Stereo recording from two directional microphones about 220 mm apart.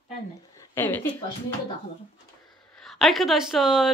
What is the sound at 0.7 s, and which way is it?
Speech, 10° left (ahead or behind).